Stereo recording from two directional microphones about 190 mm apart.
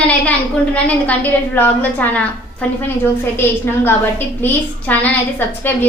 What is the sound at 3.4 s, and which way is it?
Speech, 10° left (ahead or behind).